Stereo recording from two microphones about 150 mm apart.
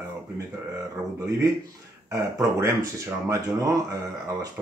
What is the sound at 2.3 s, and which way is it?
Speech, 20° right (ahead or behind).